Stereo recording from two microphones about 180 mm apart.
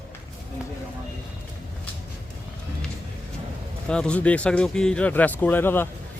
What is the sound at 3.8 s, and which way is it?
Speech, 5° left (ahead or behind).